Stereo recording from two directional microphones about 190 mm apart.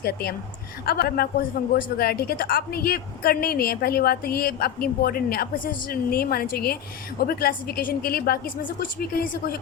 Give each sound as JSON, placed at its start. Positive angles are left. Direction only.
{"t": 0.0, "sound": "a woman's voice", "side_deg": 55}